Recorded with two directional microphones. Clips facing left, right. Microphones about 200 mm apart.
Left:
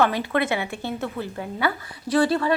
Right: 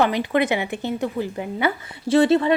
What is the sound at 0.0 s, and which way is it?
Speech, 15° right (ahead or behind).